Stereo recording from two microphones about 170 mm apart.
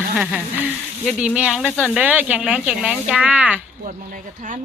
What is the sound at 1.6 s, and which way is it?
Speech, 10° left (ahead or behind).